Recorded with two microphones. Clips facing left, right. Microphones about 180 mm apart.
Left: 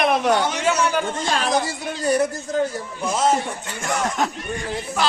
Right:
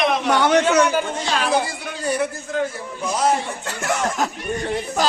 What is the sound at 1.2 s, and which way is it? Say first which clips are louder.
Speech: right 1 dB; 45° left (ahead or behind).